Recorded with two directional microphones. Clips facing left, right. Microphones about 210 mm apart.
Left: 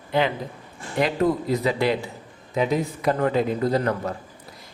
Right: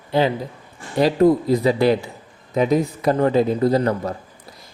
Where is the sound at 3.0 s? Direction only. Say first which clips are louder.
Right 3 dB; 35° right (ahead or behind).